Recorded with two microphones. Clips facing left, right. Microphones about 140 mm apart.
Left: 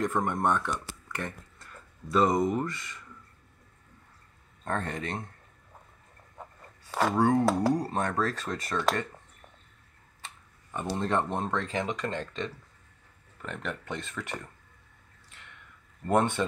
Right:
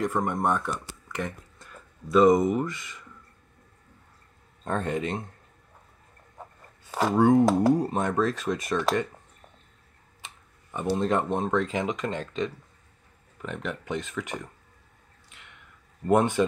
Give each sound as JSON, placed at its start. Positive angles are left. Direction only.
{"t": 0.0, "sound": "speech", "side_deg": -5}
{"t": 1.1, "sound": "speech", "side_deg": -15}
{"t": 4.6, "sound": "speech", "side_deg": -15}
{"t": 6.9, "sound": "speech", "side_deg": -15}
{"t": 10.7, "sound": "speech", "side_deg": -15}
{"t": 16.1, "sound": "speech", "side_deg": -15}